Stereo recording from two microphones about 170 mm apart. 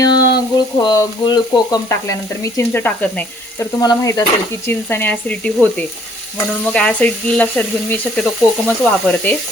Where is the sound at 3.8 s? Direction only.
20° left (ahead or behind).